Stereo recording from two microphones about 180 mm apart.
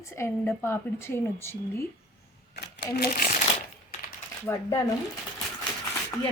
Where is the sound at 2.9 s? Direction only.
55° left (ahead or behind).